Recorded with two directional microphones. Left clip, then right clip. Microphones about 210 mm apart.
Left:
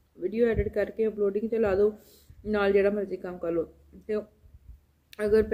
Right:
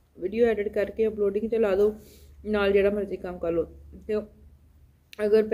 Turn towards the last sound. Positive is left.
turn(degrees=0)  # may be behind; listen again after turning